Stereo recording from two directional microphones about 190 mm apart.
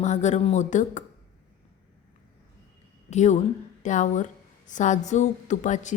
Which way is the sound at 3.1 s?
40° left (ahead or behind).